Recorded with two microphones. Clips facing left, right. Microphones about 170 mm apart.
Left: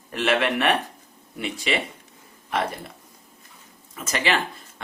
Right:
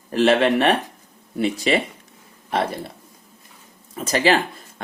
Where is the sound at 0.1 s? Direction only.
35° right (ahead or behind).